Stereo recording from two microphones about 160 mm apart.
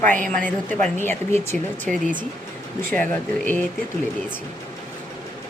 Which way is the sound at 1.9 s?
55° right (ahead or behind).